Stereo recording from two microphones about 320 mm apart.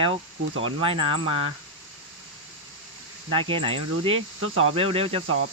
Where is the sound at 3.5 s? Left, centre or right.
Centre.